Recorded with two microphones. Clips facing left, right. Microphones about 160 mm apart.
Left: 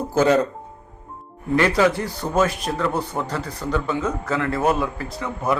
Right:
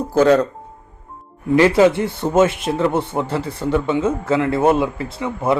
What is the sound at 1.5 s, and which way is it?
A man's voice, 25° right (ahead or behind).